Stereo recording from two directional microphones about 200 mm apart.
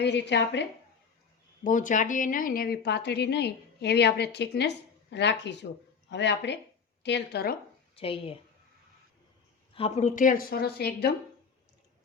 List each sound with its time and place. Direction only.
0.0 s a woman's voice: 60° left (ahead or behind)
1.6 s a woman's voice: 40° left (ahead or behind); by 7.5 s 55° left (ahead or behind)
7.9 s a woman's voice: 30° left (ahead or behind)
9.7 s a woman's voice: 30° left (ahead or behind); by 11.1 s 50° left (ahead or behind)